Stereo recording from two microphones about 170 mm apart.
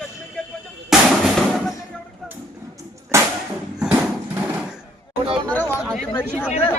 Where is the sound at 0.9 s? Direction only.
Centre (ahead or behind).